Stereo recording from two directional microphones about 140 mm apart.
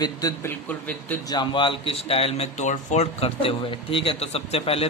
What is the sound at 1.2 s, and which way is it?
A man's voice, 35° left (ahead or behind).